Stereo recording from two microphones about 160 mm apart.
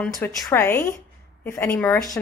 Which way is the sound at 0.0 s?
15° left (ahead or behind).